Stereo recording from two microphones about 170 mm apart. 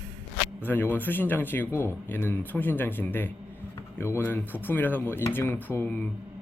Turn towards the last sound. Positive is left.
turn(degrees=10)  # may be behind; listen again after turning